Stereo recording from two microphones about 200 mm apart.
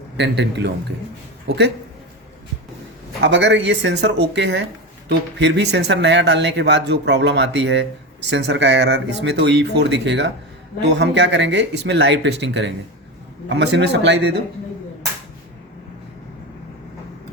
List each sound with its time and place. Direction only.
0.2 s speech: 60° right (ahead or behind)
3.2 s speech: 65° right (ahead or behind)